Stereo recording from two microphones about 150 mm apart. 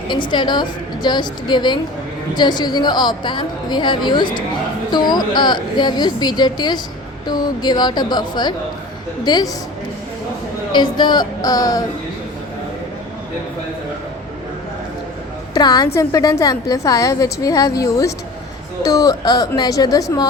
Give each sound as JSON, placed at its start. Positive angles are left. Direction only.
{"t": 0.1, "sound": "a woman's voice", "side_deg": 30}
{"t": 10.7, "sound": "a woman's voice", "side_deg": 30}
{"t": 15.5, "sound": "a woman's voice", "side_deg": 25}